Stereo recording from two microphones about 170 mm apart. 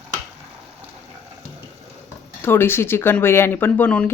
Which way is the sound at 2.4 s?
15° left (ahead or behind).